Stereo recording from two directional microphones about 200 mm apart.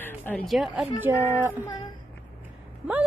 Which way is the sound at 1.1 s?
15° right (ahead or behind).